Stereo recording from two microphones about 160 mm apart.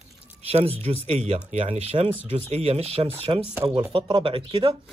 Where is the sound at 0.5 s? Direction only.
40° right (ahead or behind).